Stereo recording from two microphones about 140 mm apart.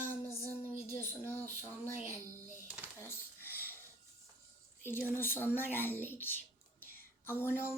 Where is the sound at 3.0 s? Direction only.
15° left (ahead or behind).